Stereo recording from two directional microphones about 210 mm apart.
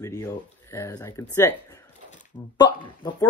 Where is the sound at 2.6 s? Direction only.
20° left (ahead or behind).